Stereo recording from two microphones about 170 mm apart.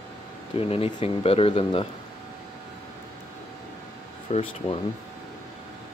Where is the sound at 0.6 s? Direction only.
35° left (ahead or behind).